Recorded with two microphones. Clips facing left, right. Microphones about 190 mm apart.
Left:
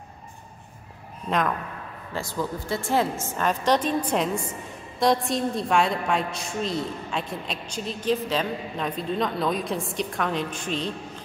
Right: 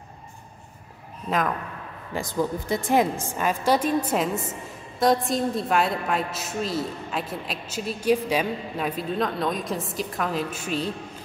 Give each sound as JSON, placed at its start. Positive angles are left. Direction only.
{"t": 2.1, "sound": "a woman's voice", "side_deg": -15}